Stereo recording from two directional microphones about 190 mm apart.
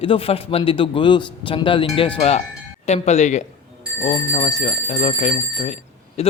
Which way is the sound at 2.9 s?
35° left (ahead or behind).